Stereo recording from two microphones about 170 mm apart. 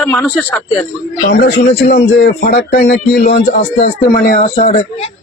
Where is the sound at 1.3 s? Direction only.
65° left (ahead or behind).